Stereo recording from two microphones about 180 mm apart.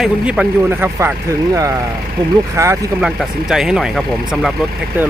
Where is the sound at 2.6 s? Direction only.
15° right (ahead or behind).